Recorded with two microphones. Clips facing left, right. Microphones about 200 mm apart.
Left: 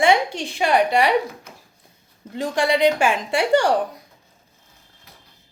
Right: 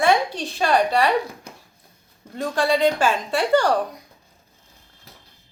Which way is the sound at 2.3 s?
15° left (ahead or behind).